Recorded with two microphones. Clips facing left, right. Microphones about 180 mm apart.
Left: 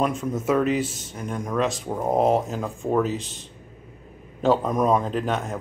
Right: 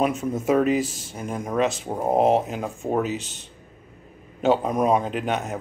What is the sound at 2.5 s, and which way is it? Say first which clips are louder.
Speech: left 1 dB; 10° right (ahead or behind).